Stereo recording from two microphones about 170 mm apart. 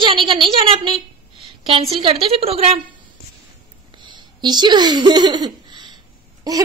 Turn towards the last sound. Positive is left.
turn(degrees=-20)  # may be behind; listen again after turning